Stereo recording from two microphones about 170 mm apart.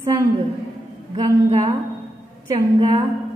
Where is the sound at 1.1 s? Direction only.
25° right (ahead or behind).